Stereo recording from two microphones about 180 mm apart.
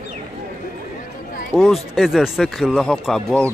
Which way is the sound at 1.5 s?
Centre (ahead or behind).